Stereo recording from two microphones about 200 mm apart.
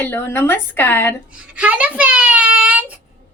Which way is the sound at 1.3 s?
5° right (ahead or behind).